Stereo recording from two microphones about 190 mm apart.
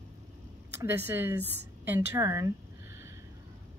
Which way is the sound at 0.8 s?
10° right (ahead or behind).